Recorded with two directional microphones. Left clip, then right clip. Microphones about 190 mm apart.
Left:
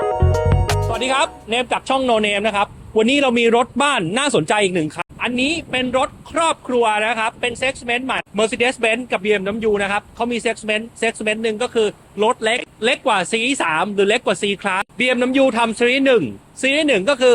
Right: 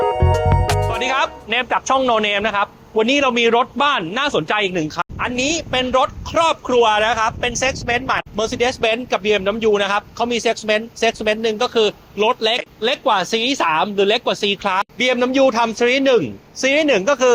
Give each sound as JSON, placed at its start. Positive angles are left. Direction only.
{"t": 0.0, "sound": "music", "side_deg": 0}
{"t": 1.0, "sound": "speech", "side_deg": 20}
{"t": 2.9, "sound": "a man's voice", "side_deg": 40}
{"t": 4.7, "sound": "a woman's voice", "side_deg": 30}
{"t": 5.5, "sound": "speech", "side_deg": 10}